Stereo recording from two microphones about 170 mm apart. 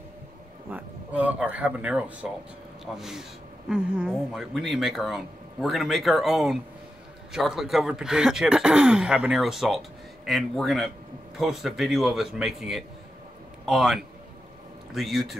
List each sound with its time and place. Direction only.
0.7 s speech: 10° right (ahead or behind)